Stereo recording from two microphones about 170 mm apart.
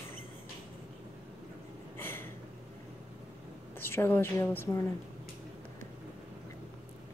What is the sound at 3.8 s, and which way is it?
Speech, 15° left (ahead or behind).